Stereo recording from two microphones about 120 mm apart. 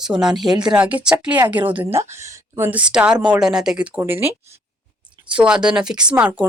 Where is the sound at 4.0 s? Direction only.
15° right (ahead or behind).